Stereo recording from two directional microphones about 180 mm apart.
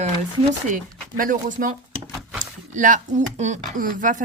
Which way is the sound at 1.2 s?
50° right (ahead or behind).